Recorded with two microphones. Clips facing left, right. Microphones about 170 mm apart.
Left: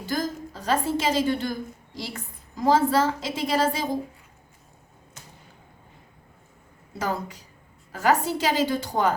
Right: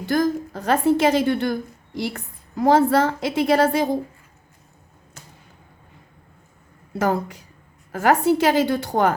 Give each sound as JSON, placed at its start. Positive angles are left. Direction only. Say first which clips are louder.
{"t": 0.0, "sound": "a woman's voice", "louder": "right 8 dB", "side_deg": -60}
{"t": 7.0, "sound": "a woman's voice", "louder": "right 7 dB", "side_deg": -60}